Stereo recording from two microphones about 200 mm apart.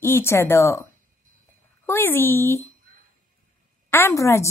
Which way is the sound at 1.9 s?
10° left (ahead or behind).